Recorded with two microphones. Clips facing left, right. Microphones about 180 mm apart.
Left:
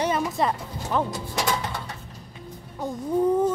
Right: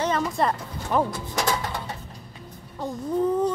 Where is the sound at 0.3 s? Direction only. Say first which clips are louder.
Even; centre (ahead or behind).